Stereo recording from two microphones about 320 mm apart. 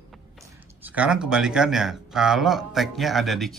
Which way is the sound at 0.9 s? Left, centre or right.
Centre.